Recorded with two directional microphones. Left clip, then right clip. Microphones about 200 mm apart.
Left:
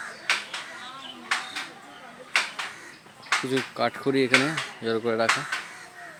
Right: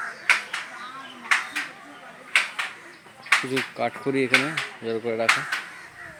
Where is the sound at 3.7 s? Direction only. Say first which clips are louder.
Left 1 dB; 10° left (ahead or behind).